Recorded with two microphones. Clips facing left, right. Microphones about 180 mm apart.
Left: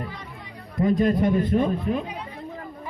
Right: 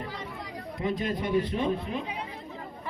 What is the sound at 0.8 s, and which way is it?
Speech, 45° left (ahead or behind).